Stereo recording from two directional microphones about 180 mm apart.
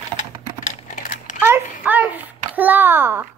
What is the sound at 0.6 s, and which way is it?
Typing, 45° left (ahead or behind).